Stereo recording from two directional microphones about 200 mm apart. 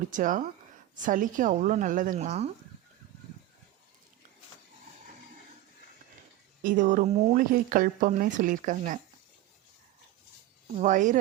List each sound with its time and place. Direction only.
0.1 s speech: 40° right (ahead or behind)
6.6 s speech: 40° right (ahead or behind)
10.8 s speech: 40° right (ahead or behind)